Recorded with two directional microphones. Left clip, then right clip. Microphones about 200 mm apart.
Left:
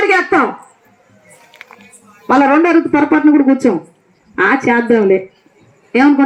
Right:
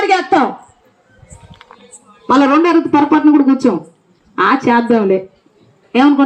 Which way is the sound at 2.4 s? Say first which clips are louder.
Left 1 dB; 50° right (ahead or behind).